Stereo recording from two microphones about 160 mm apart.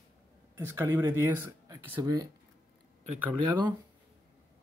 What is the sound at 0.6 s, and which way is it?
Speech, 15° right (ahead or behind).